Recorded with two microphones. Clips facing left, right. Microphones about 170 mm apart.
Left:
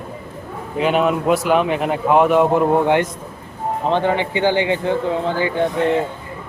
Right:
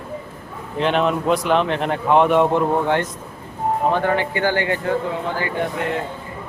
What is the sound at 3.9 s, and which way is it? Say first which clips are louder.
A man's voice: left 2 dB; 20° left (ahead or behind).